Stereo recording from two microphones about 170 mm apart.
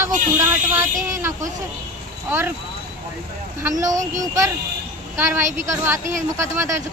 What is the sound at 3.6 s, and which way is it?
Speech, 20° right (ahead or behind).